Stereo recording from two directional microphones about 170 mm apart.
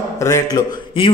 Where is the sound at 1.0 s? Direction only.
30° left (ahead or behind).